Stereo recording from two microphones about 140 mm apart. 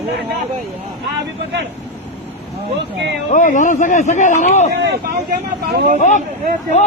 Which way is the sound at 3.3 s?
65° left (ahead or behind).